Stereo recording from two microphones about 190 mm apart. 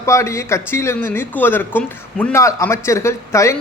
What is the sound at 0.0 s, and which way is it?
Speech, 15° left (ahead or behind).